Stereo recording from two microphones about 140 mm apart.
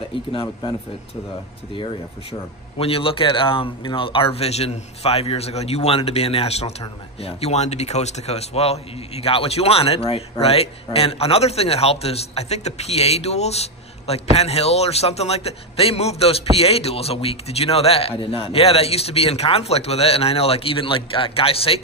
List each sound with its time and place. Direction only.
0.1 s speech: 35° left (ahead or behind)
2.8 s a man's voice: 40° left (ahead or behind)